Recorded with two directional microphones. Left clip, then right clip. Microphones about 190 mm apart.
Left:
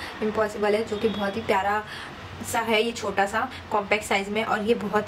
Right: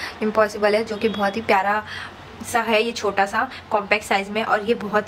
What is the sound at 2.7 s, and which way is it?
A woman's voice, 15° right (ahead or behind).